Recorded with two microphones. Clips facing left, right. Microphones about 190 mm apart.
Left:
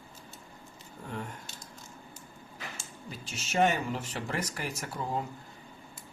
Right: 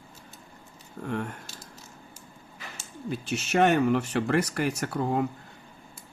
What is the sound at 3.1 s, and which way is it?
Speech, 65° right (ahead or behind).